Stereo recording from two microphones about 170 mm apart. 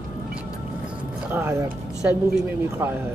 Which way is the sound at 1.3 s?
15° right (ahead or behind).